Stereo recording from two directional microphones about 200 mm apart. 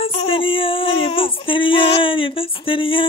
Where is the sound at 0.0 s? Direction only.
30° left (ahead or behind).